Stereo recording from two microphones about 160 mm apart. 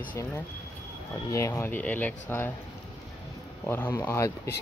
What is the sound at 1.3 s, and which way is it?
Speech, 20° left (ahead or behind).